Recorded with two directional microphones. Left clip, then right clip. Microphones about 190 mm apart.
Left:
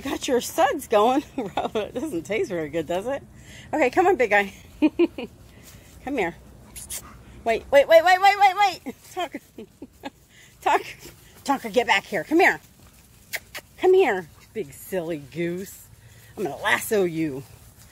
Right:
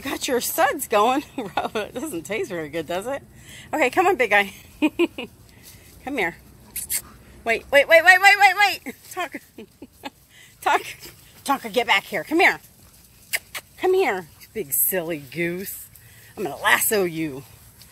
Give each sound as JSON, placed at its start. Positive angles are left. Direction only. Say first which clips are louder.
{"t": 0.0, "sound": "speech", "louder": "even", "side_deg": 10}
{"t": 13.3, "sound": "a sound", "louder": "right 5 dB", "side_deg": 15}
{"t": 14.5, "sound": "speech", "louder": "right 3 dB", "side_deg": -20}
{"t": 16.3, "sound": "speech", "louder": "right 4 dB", "side_deg": -5}